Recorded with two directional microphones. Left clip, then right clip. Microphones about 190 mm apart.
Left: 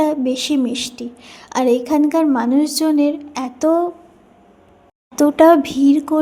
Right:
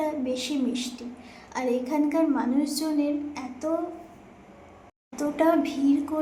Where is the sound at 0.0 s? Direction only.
50° left (ahead or behind).